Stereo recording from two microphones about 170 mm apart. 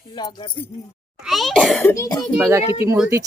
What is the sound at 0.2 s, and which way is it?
Speech, 25° left (ahead or behind).